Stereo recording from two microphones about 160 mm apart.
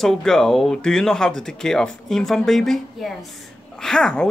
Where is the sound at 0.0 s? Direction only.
Centre (ahead or behind).